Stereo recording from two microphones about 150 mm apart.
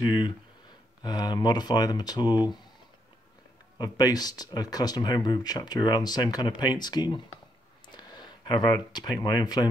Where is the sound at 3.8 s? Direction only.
25° left (ahead or behind).